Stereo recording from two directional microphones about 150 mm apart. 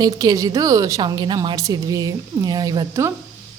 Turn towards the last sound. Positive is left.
turn(degrees=-20)  # may be behind; listen again after turning